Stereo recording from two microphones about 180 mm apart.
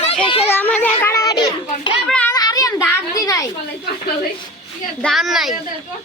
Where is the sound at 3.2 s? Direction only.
20° left (ahead or behind).